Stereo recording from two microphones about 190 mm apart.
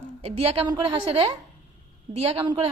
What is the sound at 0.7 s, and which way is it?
A woman's voice, 20° right (ahead or behind).